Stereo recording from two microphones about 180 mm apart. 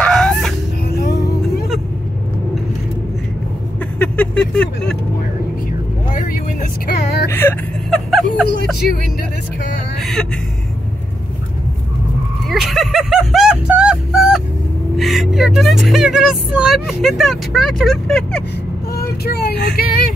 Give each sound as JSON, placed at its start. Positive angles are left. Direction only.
{"t": 0.0, "sound": "chicken", "side_deg": 5}
{"t": 0.8, "sound": "music", "side_deg": 65}
{"t": 4.0, "sound": "vehicle", "side_deg": 5}
{"t": 6.9, "sound": "a sound", "side_deg": 70}
{"t": 7.2, "sound": "whimper", "side_deg": 10}
{"t": 8.1, "sound": "music", "side_deg": 0}
{"t": 12.4, "sound": "a sound", "side_deg": 0}
{"t": 15.0, "sound": "a woman's voice", "side_deg": 0}
{"t": 18.9, "sound": "vehicle", "side_deg": 60}